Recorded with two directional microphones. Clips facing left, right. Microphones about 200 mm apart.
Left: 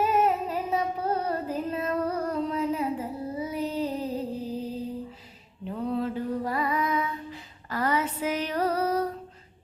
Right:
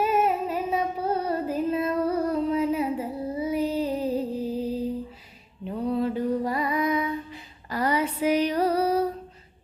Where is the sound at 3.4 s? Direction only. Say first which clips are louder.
Right 5 dB; 10° right (ahead or behind).